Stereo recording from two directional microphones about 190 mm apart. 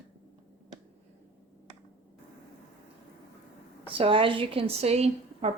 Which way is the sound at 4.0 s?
25° right (ahead or behind).